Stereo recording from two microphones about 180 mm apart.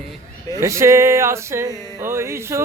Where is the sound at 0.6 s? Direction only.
15° right (ahead or behind).